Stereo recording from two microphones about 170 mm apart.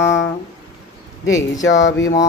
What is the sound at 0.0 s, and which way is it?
Music, 15° left (ahead or behind).